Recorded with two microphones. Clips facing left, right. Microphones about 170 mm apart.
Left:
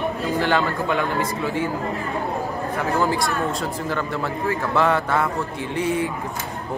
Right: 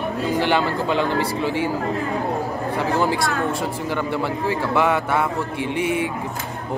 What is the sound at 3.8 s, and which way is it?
Speech, 20° right (ahead or behind).